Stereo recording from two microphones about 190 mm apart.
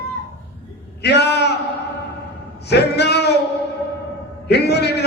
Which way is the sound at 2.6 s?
60° left (ahead or behind).